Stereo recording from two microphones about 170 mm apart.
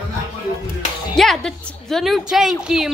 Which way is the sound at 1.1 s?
Centre (ahead or behind).